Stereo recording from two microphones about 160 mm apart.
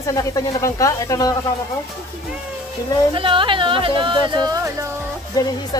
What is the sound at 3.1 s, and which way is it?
Speech, 30° right (ahead or behind).